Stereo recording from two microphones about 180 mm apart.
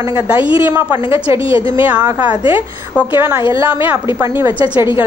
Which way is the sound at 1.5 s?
30° left (ahead or behind).